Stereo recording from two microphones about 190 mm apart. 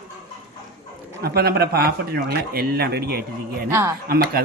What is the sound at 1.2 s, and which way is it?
Speech, 55° right (ahead or behind).